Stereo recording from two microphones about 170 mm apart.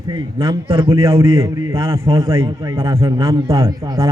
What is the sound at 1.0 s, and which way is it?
A man's voice, 15° right (ahead or behind).